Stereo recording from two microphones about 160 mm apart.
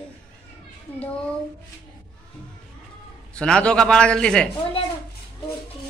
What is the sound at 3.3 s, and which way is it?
A man's voice, 5° left (ahead or behind).